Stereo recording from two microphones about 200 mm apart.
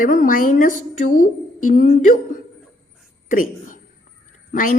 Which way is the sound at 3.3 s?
40° left (ahead or behind).